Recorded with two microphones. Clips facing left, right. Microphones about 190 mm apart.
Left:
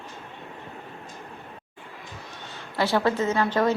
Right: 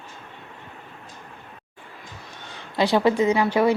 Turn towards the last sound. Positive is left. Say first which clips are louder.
# right 4 dB
turn(degrees=-10)  # may be behind; listen again after turning